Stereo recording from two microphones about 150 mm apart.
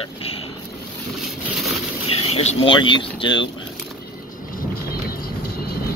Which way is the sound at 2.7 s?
30° left (ahead or behind).